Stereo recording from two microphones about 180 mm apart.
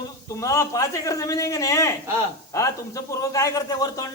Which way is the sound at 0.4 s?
15° left (ahead or behind).